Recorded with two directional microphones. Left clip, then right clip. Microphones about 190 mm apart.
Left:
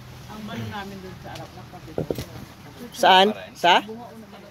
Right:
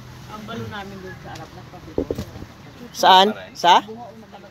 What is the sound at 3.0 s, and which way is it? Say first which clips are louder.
Speech: right 3 dB; centre (ahead or behind).